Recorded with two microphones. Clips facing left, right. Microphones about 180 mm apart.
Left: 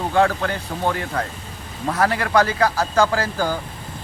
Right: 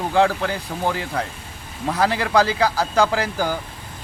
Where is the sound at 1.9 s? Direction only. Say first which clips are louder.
Even; 15° right (ahead or behind).